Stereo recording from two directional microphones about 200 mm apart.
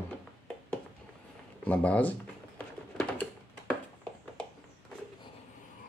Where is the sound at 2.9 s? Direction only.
5° left (ahead or behind).